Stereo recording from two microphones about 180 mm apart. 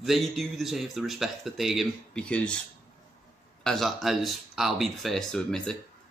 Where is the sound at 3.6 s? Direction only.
Centre (ahead or behind).